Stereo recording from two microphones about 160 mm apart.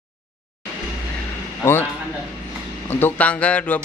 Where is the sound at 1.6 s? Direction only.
15° left (ahead or behind).